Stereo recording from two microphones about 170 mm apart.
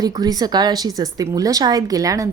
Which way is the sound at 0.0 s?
20° right (ahead or behind).